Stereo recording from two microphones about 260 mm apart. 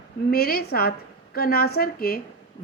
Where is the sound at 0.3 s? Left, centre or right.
Left.